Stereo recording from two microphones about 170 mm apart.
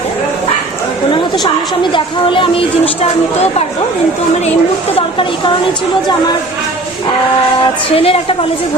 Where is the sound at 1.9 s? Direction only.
30° left (ahead or behind).